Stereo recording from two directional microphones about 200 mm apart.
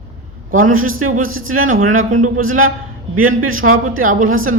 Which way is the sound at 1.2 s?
90° right.